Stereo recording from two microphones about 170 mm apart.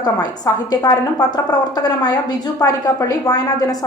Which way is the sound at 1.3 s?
25° left (ahead or behind).